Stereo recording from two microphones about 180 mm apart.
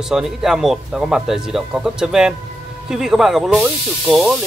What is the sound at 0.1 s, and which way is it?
Speech, 5° right (ahead or behind).